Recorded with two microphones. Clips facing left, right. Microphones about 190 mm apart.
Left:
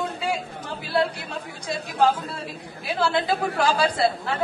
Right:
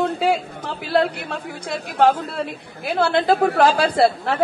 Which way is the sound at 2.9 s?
50° right (ahead or behind).